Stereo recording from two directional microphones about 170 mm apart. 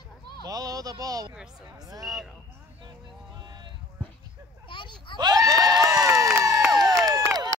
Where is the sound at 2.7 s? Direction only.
25° right (ahead or behind).